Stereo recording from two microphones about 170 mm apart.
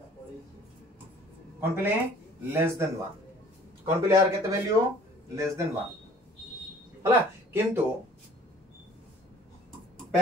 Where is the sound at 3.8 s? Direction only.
15° right (ahead or behind).